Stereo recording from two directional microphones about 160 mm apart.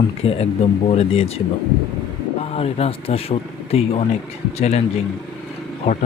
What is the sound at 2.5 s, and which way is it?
Speech, 40° left (ahead or behind).